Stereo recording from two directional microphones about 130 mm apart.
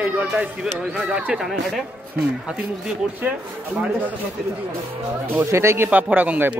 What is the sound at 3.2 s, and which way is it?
Speech, 15° right (ahead or behind).